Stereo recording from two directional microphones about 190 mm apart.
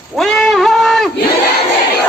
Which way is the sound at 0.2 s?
Centre (ahead or behind).